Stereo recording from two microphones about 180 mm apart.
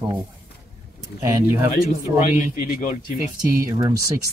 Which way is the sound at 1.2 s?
15° right (ahead or behind).